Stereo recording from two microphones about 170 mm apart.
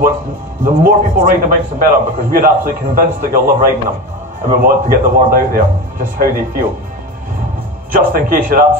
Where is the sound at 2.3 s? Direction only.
55° right (ahead or behind).